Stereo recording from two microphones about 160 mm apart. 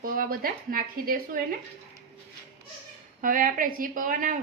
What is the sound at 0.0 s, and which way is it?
A woman's voice, 65° right (ahead or behind).